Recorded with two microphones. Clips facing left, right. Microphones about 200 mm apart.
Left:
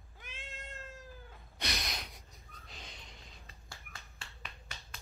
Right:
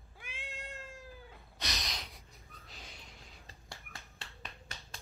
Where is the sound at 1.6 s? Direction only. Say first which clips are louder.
Left 2 dB; 55° left (ahead or behind).